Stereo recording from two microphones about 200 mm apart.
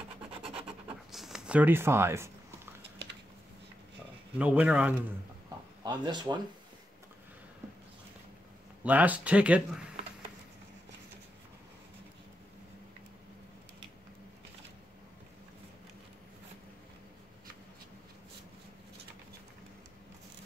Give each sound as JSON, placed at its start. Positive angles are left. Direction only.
{"t": 0.3, "sound": "filing", "side_deg": -25}
{"t": 0.8, "sound": "a sound", "side_deg": 0}
{"t": 4.4, "sound": "speech", "side_deg": -5}
{"t": 5.9, "sound": "speech", "side_deg": -20}
{"t": 8.8, "sound": "speech", "side_deg": -10}